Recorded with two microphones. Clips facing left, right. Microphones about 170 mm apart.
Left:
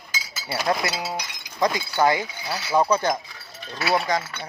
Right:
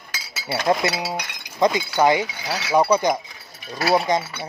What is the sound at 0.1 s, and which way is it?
Chink, 65° right (ahead or behind).